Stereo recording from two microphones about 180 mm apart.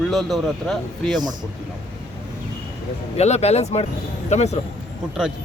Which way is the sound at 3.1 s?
35° left (ahead or behind).